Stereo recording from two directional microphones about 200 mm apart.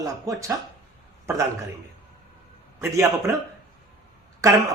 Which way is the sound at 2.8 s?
15° right (ahead or behind).